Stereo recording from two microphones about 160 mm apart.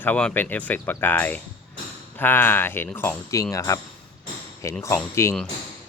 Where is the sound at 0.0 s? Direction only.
10° left (ahead or behind).